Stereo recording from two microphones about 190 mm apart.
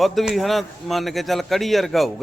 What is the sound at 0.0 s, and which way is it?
A man's voice, centre (ahead or behind).